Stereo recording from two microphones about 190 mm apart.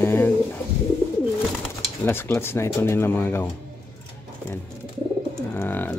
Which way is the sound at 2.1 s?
10° left (ahead or behind).